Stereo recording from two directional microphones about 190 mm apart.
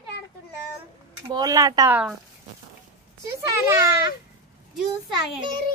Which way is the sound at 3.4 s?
15° right (ahead or behind).